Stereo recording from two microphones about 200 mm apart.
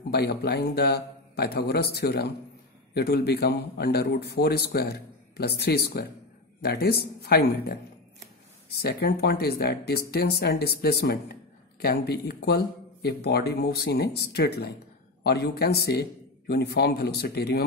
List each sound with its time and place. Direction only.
0.1 s a man's voice: 55° left (ahead or behind)